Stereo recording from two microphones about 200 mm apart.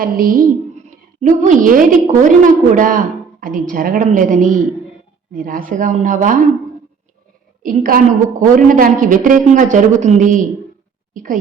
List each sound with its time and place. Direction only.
0.0 s a woman's voice: 45° right (ahead or behind)
7.6 s a woman's voice: 45° right (ahead or behind)